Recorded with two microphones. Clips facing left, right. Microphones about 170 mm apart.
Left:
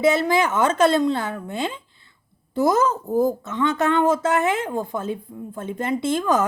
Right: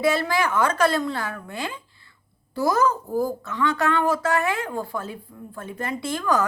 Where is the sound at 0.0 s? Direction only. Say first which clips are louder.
Left 4 dB; 20° left (ahead or behind).